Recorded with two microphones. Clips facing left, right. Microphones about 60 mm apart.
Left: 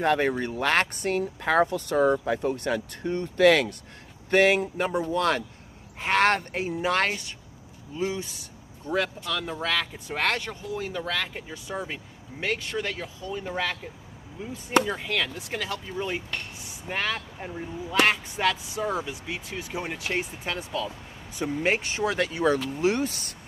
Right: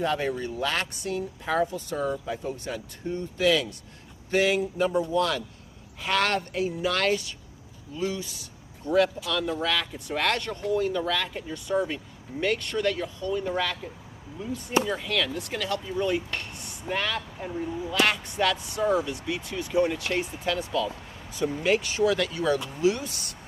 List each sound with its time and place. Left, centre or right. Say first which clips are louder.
0.0 s speech: left 3 dB; left
1.4 s speech: left 4 dB; left
4.3 s speech: left 3 dB; left
5.9 s speech: left 3 dB; left; by 13.5 s centre
14.9 s speech: right 1 dB; centre
16.3 s speech: right 1 dB; centre; by 23.3 s left